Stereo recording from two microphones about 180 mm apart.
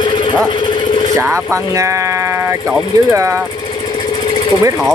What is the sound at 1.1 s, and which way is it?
Speech, 15° right (ahead or behind).